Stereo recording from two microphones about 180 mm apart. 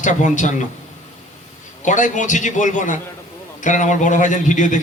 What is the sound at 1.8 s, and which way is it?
A man's voice, 45° left (ahead or behind).